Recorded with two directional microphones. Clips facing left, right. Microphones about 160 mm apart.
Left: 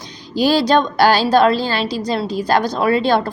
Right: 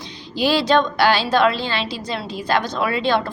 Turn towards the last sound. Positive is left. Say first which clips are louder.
# left 4 dB
turn(degrees=40)  # may be behind; listen again after turning